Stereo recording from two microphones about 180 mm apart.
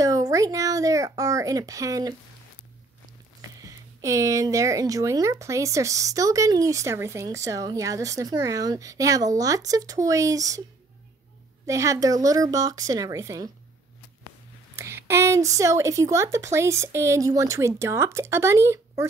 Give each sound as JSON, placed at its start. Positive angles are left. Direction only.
{"t": 0.0, "sound": "a child's voice", "side_deg": -20}
{"t": 3.6, "sound": "speech", "side_deg": -15}
{"t": 11.6, "sound": "speech", "side_deg": -15}
{"t": 14.8, "sound": "speech", "side_deg": -15}